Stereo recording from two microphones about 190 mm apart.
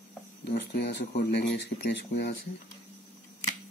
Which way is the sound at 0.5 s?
60° left (ahead or behind).